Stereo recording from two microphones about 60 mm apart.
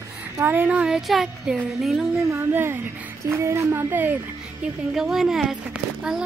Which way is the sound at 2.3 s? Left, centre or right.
Right.